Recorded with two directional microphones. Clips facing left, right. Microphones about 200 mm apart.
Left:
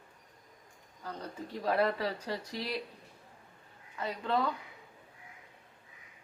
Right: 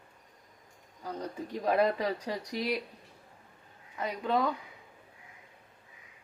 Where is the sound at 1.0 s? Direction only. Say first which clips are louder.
Right 4 dB; 10° right (ahead or behind).